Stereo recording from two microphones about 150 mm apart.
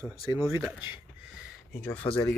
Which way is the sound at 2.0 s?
35° left (ahead or behind).